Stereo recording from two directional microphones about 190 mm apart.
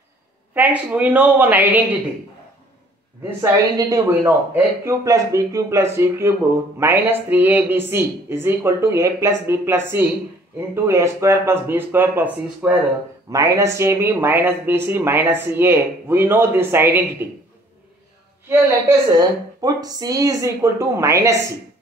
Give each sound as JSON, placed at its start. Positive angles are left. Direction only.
{"t": 0.6, "sound": "speech", "side_deg": -10}
{"t": 3.3, "sound": "speech", "side_deg": -20}
{"t": 18.5, "sound": "speech", "side_deg": -15}